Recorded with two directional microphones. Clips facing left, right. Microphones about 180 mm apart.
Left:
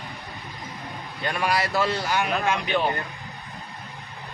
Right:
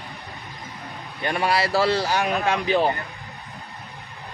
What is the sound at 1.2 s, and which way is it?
Speech, 30° right (ahead or behind).